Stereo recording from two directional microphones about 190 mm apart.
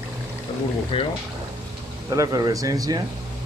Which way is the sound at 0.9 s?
30° left (ahead or behind).